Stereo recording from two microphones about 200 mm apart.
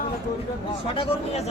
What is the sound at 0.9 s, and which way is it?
Speech, 30° left (ahead or behind).